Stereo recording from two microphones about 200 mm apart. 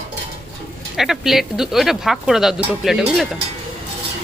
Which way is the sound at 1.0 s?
Centre (ahead or behind).